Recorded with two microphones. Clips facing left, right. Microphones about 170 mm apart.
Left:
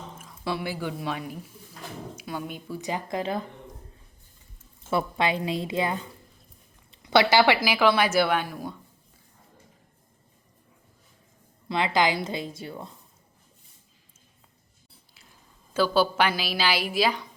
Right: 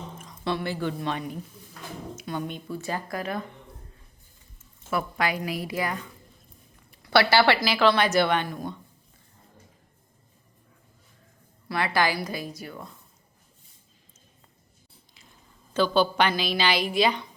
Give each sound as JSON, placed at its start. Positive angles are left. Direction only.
{"t": 0.2, "sound": "a woman's voice", "side_deg": 5}
{"t": 4.9, "sound": "a woman's voice", "side_deg": 25}
{"t": 11.7, "sound": "a woman's voice", "side_deg": 20}
{"t": 15.7, "sound": "a woman's voice", "side_deg": 5}